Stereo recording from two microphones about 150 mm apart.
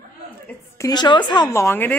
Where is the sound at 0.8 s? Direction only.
25° left (ahead or behind).